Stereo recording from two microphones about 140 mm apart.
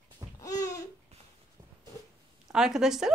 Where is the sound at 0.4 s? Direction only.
25° left (ahead or behind).